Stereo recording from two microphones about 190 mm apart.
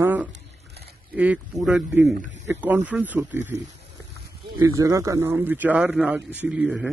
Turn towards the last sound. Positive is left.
turn(degrees=-5)  # may be behind; listen again after turning